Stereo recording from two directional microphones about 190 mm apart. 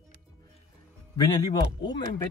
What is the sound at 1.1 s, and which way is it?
Speech, 20° left (ahead or behind).